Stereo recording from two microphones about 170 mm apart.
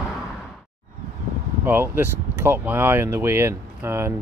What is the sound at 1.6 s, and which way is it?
Speech, 10° right (ahead or behind).